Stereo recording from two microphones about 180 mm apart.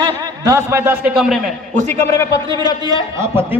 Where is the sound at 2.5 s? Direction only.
25° right (ahead or behind).